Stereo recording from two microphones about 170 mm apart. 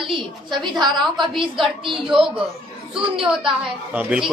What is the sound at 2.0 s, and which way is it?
Speech, 5° right (ahead or behind).